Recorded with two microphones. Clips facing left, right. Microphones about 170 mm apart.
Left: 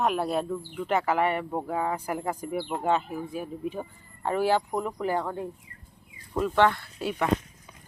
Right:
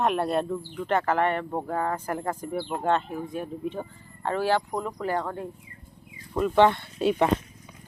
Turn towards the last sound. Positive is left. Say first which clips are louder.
# right 6 dB
turn(degrees=-25)  # may be behind; listen again after turning